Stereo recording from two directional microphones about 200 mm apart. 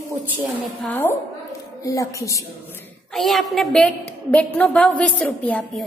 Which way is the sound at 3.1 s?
Centre (ahead or behind).